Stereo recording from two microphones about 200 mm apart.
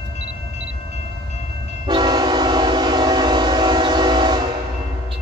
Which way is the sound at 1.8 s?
20° right (ahead or behind).